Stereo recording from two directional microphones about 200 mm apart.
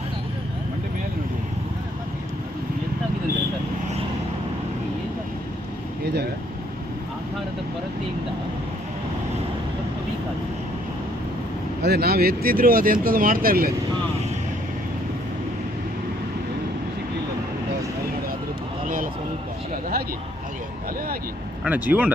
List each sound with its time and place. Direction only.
11.8 s speech: 55° right (ahead or behind)
21.6 s speech: 10° right (ahead or behind)